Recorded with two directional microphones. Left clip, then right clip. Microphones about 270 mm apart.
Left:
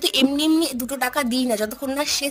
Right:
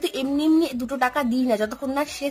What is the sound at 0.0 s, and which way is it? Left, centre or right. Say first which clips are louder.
Speech: left 4 dB; left.